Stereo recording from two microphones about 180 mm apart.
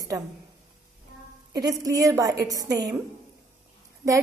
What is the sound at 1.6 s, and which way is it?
A woman's voice, 20° right (ahead or behind).